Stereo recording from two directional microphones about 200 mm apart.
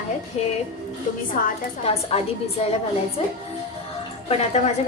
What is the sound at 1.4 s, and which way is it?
Speech, 45° left (ahead or behind).